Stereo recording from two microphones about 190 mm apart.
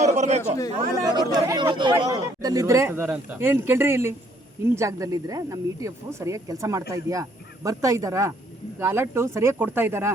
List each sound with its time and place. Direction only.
0.0 s a man's voice: 40° right (ahead or behind)
1.0 s a man's voice: 20° right (ahead or behind)